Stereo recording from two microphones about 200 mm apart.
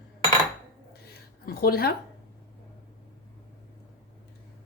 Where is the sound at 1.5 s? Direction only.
50° left (ahead or behind).